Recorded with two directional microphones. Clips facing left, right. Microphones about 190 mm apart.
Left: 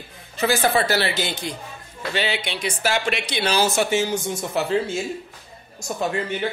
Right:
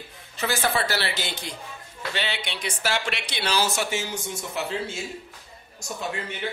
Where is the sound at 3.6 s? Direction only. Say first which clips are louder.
Left 6 dB; 50° left (ahead or behind).